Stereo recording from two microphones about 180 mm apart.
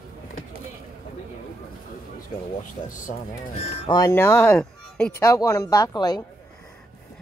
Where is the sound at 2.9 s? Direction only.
50° left (ahead or behind).